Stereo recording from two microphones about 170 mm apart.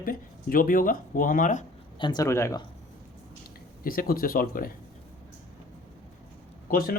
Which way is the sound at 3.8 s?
60° left (ahead or behind).